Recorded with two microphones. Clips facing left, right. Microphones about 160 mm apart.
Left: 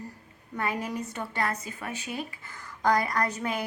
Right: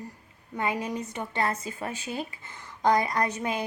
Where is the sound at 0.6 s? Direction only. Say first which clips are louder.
Right 1 dB; 20° right (ahead or behind).